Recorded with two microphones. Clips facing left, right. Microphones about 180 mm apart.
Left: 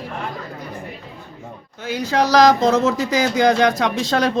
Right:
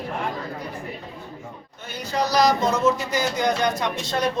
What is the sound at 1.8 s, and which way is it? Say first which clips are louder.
Speech: left 6 dB; 90° left.